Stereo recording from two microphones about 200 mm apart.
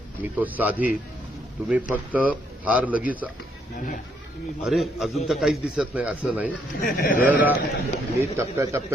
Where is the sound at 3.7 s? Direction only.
40° left (ahead or behind).